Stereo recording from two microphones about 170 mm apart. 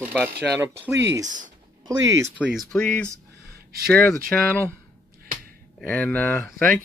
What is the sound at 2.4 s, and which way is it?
Speech, centre (ahead or behind).